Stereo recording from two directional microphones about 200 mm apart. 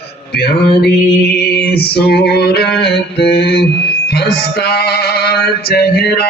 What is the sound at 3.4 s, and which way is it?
Mantra, 55° left (ahead or behind).